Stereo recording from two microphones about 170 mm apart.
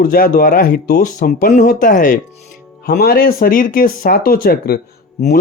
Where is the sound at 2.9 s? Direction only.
60° left (ahead or behind).